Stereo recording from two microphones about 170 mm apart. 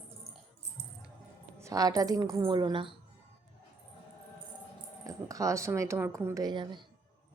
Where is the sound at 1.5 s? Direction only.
20° right (ahead or behind).